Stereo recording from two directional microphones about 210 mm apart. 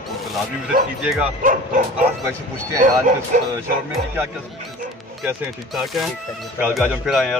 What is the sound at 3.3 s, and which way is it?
Speech, 40° right (ahead or behind).